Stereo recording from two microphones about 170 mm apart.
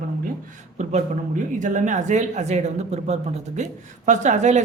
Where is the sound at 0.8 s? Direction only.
45° right (ahead or behind).